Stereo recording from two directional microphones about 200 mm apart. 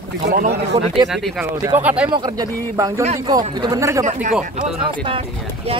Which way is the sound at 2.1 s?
20° right (ahead or behind).